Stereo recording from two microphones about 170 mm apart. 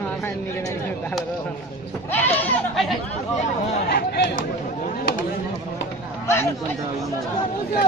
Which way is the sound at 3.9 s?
70° left (ahead or behind).